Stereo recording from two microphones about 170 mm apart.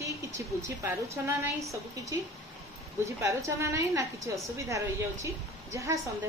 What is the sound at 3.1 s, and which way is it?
A woman's voice, 15° right (ahead or behind).